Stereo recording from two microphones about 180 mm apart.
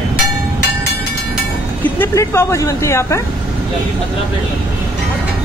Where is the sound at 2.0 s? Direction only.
15° left (ahead or behind).